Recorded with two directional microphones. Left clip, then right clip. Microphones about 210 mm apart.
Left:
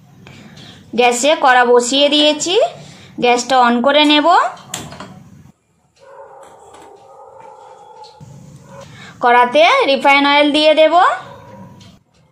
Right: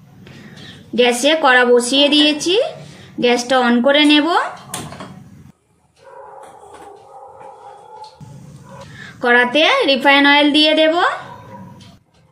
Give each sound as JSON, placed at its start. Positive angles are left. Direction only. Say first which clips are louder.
{"t": 0.9, "sound": "a woman's voice", "louder": "left 1 dB", "side_deg": 20}
{"t": 9.2, "sound": "a woman's voice", "louder": "left 3 dB", "side_deg": 20}